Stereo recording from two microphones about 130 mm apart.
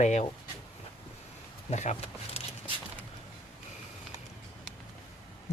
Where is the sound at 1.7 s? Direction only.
60° left (ahead or behind).